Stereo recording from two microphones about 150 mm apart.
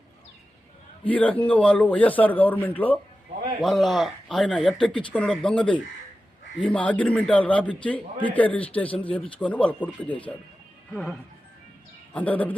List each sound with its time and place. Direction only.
1.0 s a man's voice: 10° left (ahead or behind)